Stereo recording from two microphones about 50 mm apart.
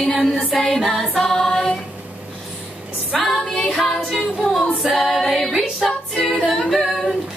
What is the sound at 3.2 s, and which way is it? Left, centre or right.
Music, centre.